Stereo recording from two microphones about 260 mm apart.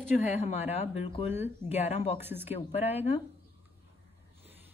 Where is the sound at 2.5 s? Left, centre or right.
Left.